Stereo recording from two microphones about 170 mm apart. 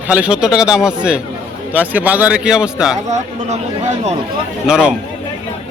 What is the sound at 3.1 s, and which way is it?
Speech, 40° right (ahead or behind).